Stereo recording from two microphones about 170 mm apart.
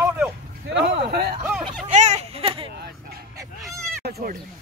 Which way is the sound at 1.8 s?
40° right (ahead or behind).